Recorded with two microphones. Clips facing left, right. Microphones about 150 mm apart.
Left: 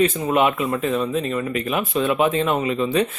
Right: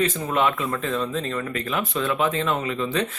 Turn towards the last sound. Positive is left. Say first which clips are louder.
# left 5 dB
turn(degrees=20)  # may be behind; listen again after turning